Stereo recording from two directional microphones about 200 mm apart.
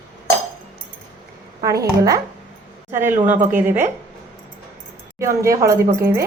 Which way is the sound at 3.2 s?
40° right (ahead or behind).